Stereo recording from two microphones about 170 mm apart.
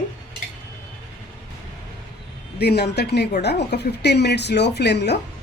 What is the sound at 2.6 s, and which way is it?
A woman's voice, 75° left (ahead or behind).